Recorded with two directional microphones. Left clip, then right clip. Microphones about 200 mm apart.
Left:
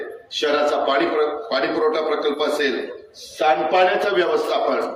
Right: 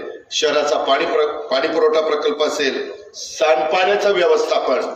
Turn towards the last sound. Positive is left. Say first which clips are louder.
# right 4 dB
turn(degrees=-55)  # may be behind; listen again after turning